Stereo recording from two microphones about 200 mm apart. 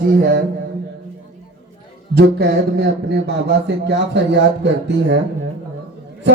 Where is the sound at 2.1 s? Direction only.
55° right (ahead or behind).